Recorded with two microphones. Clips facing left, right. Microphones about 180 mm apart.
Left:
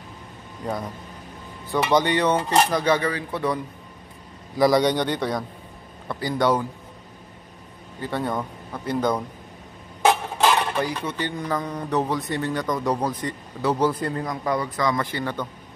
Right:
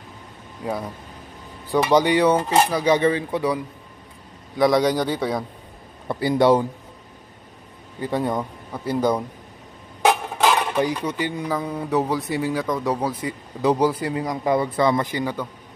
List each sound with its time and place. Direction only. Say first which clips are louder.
0.6 s a man's voice: right 1 dB; 5° right (ahead or behind)
4.6 s a man's voice: right 1 dB; centre (ahead or behind)
6.0 s speech: right 5 dB; 25° right (ahead or behind)
8.1 s speech: right 3 dB; 15° right (ahead or behind)
10.0 s dishes: right 1 dB; 10° right (ahead or behind)
13.6 s speech: right 3 dB; 15° right (ahead or behind)
14.2 s speech: right 7 dB; 20° right (ahead or behind)
15.0 s speech: right 2 dB; 10° right (ahead or behind)